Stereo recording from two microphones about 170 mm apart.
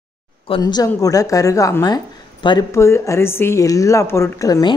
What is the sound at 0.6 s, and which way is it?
Speech, 20° left (ahead or behind).